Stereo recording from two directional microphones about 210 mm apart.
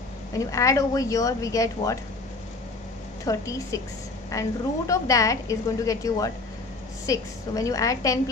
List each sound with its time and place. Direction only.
0.3 s a woman's voice: 15° left (ahead or behind)
3.3 s a woman's voice: 15° left (ahead or behind)